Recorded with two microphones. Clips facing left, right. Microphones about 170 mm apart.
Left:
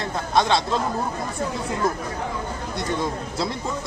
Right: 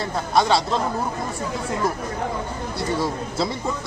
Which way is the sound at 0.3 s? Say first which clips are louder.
Right 1 dB; 5° right (ahead or behind).